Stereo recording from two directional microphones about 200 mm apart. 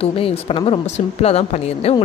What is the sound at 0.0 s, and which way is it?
A woman's voice, 30° left (ahead or behind).